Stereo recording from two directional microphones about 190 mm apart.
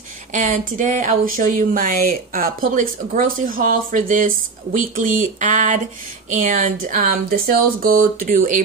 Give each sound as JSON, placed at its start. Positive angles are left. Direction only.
{"t": 0.3, "sound": "speech", "side_deg": -40}